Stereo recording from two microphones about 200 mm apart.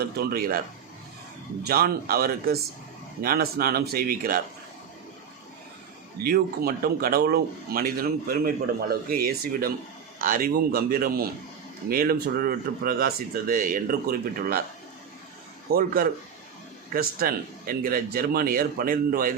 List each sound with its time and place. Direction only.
0.2 s a man's voice: 50° right (ahead or behind)
1.6 s a man's voice: 50° right (ahead or behind)
6.2 s a man's voice: 50° right (ahead or behind)
15.7 s a man's voice: 50° right (ahead or behind)